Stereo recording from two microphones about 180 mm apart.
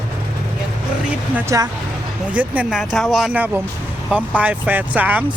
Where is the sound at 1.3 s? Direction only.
15° right (ahead or behind).